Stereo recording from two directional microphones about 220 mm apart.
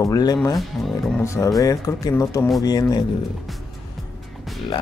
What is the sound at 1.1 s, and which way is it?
Speech, 10° left (ahead or behind).